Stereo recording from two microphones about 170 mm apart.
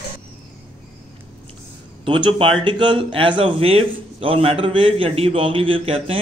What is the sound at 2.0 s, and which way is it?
Speech, 30° right (ahead or behind).